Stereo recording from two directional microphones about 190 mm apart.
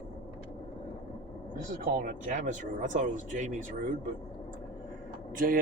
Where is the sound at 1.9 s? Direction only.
45° right (ahead or behind).